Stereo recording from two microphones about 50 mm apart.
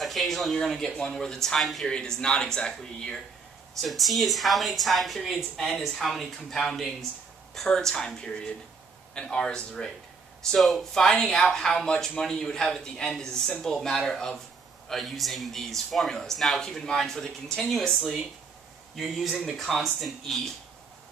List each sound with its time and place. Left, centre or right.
0.0 s speech: centre
1.9 s speech: centre
3.8 s a man's voice: centre
18.9 s a man's voice: centre